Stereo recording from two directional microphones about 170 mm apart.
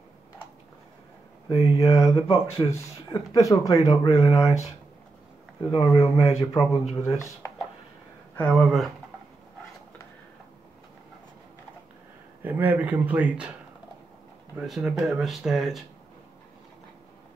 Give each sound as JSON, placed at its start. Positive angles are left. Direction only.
{"t": 1.5, "sound": "speech", "side_deg": 20}
{"t": 2.1, "sound": "speech", "side_deg": 35}
{"t": 2.7, "sound": "speech", "side_deg": 20}
{"t": 5.6, "sound": "speech", "side_deg": 25}
{"t": 8.4, "sound": "speech", "side_deg": 5}
{"t": 12.4, "sound": "speech", "side_deg": -10}
{"t": 14.6, "sound": "speech", "side_deg": -5}